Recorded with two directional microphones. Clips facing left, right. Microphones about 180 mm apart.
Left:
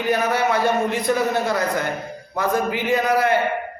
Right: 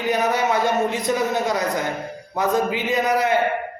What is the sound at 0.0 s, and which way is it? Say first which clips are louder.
A man's voice: even; 20° right (ahead or behind).